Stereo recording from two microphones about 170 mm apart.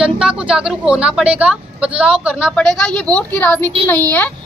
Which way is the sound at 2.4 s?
5° left (ahead or behind).